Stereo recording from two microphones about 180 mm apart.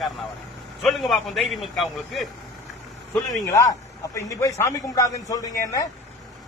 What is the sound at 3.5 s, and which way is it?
A man's voice, 20° left (ahead or behind).